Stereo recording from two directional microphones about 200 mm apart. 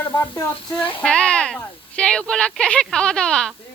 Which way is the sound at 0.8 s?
25° left (ahead or behind).